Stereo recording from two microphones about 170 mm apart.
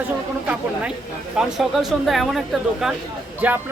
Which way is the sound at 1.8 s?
Centre (ahead or behind).